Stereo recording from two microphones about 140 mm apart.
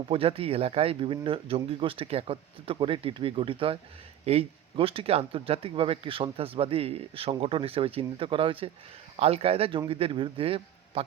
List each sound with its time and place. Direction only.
0.1 s speech: 40° right (ahead or behind)